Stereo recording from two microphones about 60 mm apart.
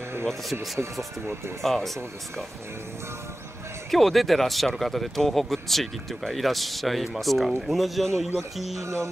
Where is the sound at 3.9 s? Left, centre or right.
Centre.